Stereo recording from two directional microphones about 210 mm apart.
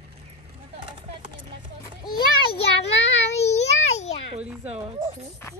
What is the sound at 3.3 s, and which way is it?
Child singing, 30° left (ahead or behind).